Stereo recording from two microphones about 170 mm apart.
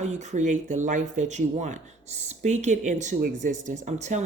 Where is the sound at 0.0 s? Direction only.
45° right (ahead or behind).